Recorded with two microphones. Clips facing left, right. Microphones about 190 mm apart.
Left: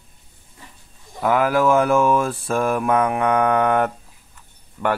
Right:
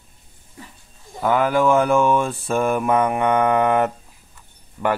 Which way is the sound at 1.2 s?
Centre (ahead or behind).